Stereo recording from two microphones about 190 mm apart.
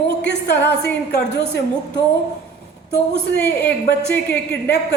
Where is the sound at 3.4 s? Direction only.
10° left (ahead or behind).